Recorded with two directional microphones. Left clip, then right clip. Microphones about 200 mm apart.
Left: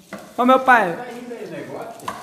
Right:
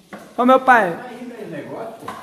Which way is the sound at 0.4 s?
5° right (ahead or behind).